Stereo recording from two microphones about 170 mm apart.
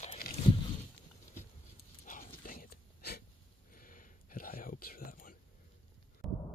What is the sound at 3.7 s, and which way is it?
Whispering, 55° left (ahead or behind).